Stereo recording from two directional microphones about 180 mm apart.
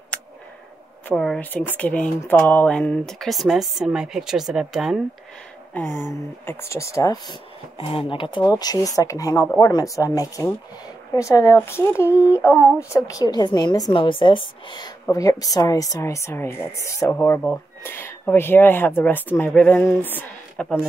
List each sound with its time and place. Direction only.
1.0 s a woman's voice: centre (ahead or behind)
6.4 s a woman's voice: 15° left (ahead or behind)
7.7 s a woman's voice: 30° left (ahead or behind); by 20.6 s 10° left (ahead or behind)